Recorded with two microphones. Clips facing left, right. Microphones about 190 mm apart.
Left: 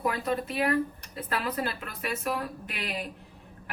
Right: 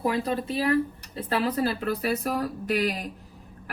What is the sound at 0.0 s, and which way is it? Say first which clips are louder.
Speech: right 3 dB; 30° right (ahead or behind).